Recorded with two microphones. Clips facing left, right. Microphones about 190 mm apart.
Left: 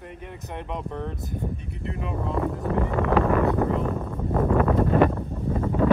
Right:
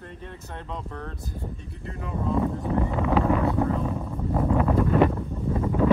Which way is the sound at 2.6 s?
15° right (ahead or behind).